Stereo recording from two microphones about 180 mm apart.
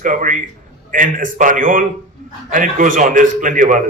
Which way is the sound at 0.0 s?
45° right (ahead or behind).